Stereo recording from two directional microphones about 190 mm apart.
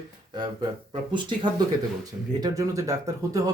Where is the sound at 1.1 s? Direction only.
25° right (ahead or behind).